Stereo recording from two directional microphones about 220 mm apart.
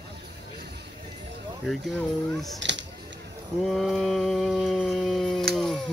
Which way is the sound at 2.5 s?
55° right (ahead or behind).